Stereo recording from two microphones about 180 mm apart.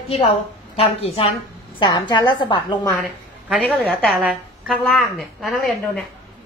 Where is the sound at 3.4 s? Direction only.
Centre (ahead or behind).